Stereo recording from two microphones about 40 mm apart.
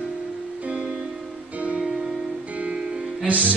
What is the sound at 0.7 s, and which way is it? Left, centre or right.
Music, right.